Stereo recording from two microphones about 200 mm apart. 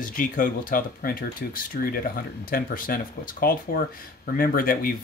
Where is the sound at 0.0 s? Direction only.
40° left (ahead or behind).